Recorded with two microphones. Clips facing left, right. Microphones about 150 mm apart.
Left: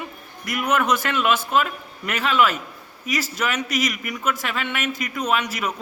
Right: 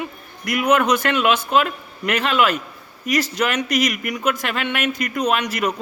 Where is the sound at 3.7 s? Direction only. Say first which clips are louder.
Right 4 dB; 60° right (ahead or behind).